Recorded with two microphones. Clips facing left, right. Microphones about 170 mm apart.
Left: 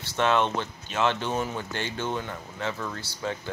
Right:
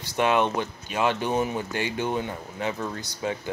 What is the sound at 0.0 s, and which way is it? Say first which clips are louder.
Speech: right 1 dB; 15° right (ahead or behind).